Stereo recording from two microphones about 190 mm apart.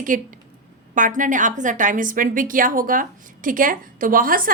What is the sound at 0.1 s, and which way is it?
A woman's voice, 45° right (ahead or behind).